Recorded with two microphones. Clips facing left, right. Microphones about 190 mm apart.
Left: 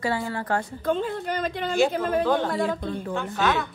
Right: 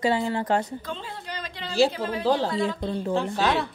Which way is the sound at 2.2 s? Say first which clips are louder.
Right 1 dB; 30° right (ahead or behind).